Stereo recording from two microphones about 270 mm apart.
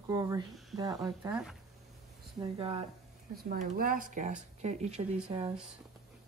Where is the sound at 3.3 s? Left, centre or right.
Right; by 5.4 s centre.